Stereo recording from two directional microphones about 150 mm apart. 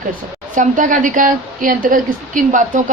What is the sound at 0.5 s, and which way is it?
A woman's voice, 60° right (ahead or behind).